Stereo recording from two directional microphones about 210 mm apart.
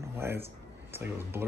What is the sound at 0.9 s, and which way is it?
Speech, 10° right (ahead or behind).